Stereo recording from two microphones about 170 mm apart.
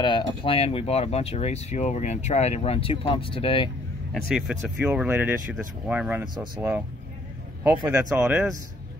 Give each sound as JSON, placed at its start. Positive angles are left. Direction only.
{"t": 0.0, "sound": "speech", "side_deg": 30}
{"t": 4.1, "sound": "speech", "side_deg": 0}
{"t": 6.2, "sound": "speech", "side_deg": -25}
{"t": 7.9, "sound": "speech", "side_deg": -10}